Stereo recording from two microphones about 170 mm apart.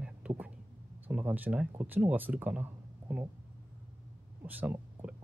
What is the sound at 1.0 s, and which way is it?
Speech, 10° right (ahead or behind).